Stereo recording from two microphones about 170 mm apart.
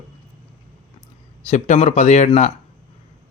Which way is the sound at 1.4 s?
40° left (ahead or behind).